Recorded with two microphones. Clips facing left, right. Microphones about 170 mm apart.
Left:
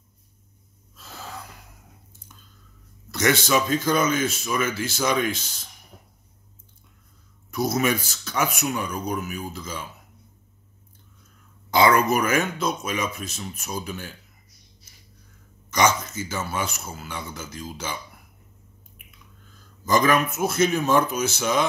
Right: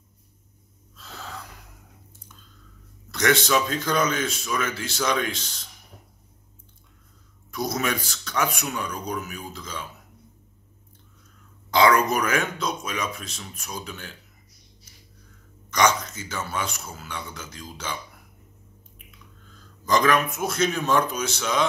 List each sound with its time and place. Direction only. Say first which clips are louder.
0.9 s wheeze: even; 5° left (ahead or behind)
3.1 s speech: even; 5° left (ahead or behind)
7.5 s speech: left 4 dB; 5° left (ahead or behind)
11.7 s speech: left 1 dB; 5° left (ahead or behind)
15.7 s speech: left 1 dB; 5° left (ahead or behind)
19.9 s speech: left 1 dB; 5° left (ahead or behind)